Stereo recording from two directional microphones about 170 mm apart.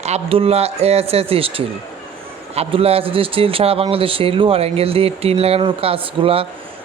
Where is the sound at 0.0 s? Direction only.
35° right (ahead or behind).